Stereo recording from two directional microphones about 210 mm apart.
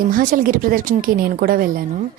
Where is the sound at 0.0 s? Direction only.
40° right (ahead or behind).